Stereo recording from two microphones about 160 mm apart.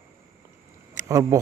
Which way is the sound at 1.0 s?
20° right (ahead or behind).